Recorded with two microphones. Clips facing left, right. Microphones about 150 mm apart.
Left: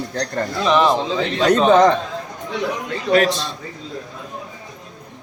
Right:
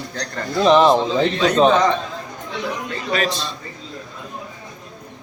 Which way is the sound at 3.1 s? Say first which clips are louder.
Left 6 dB; 60° left (ahead or behind).